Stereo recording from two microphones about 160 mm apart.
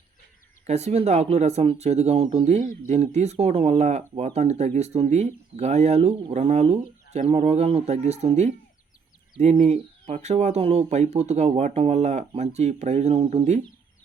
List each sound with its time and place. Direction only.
0.7 s speech: 40° right (ahead or behind)